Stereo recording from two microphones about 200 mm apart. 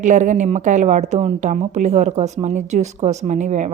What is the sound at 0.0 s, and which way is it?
A woman's voice, 40° right (ahead or behind).